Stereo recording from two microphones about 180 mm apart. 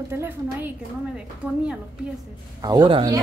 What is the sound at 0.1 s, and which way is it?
A woman's voice, 15° right (ahead or behind).